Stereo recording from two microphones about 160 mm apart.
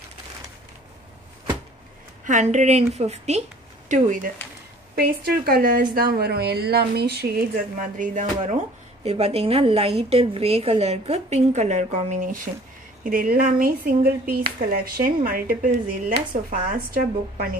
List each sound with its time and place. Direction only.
2.2 s a woman's voice: 50° right (ahead or behind)
3.9 s speech: 55° right (ahead or behind)
4.9 s a woman's voice: 80° right
8.0 s speech: 50° right (ahead or behind)